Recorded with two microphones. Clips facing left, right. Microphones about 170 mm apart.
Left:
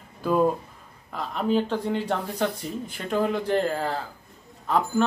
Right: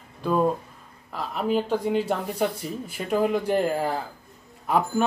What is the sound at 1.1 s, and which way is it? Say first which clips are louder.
Speech: left 1 dB; 5° right (ahead or behind).